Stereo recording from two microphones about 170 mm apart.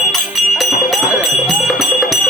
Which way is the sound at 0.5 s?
Centre (ahead or behind).